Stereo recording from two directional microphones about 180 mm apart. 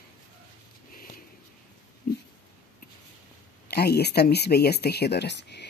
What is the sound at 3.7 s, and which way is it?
A woman's voice, 60° left (ahead or behind).